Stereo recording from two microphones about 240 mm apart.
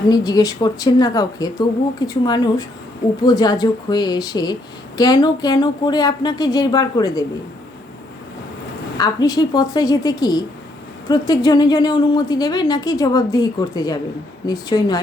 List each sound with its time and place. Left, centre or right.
0.1 s a woman's voice: centre
9.0 s a woman's voice: centre